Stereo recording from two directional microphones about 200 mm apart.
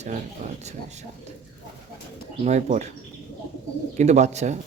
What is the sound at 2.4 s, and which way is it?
Speech, 35° right (ahead or behind).